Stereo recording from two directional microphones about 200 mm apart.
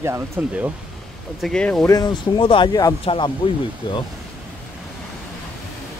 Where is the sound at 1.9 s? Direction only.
20° left (ahead or behind).